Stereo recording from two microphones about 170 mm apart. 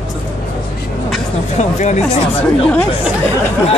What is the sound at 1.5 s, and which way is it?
Speech, 40° left (ahead or behind).